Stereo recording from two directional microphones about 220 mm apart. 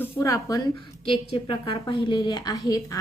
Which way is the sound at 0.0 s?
15° left (ahead or behind).